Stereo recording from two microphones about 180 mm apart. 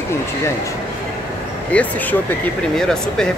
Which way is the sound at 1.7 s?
5° left (ahead or behind).